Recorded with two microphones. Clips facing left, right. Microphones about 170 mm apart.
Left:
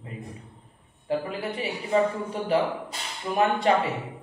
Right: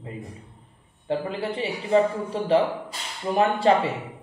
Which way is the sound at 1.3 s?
30° right (ahead or behind).